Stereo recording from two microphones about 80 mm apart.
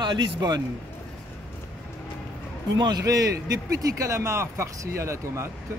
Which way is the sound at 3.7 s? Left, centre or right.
Right.